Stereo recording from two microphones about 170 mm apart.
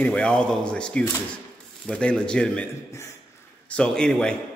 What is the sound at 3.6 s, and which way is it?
Speech, 5° left (ahead or behind).